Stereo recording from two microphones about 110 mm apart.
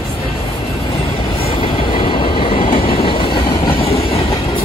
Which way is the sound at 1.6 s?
55° left (ahead or behind).